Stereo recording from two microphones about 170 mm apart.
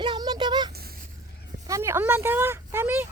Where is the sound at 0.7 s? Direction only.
65° right (ahead or behind).